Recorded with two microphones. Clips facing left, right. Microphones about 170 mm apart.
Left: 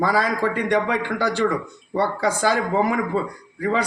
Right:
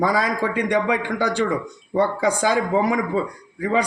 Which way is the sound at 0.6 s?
15° right (ahead or behind).